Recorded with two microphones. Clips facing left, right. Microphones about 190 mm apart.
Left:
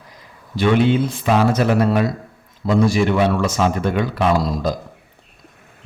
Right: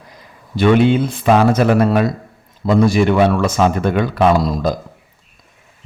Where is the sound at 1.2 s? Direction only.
60° right (ahead or behind).